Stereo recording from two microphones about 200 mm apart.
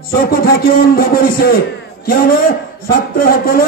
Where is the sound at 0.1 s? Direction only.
50° left (ahead or behind).